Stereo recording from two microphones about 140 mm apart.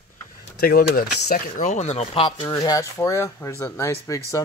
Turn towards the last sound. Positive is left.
turn(degrees=20)  # may be behind; listen again after turning